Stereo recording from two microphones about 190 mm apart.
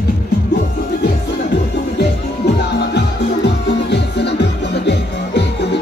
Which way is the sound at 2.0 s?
60° left (ahead or behind).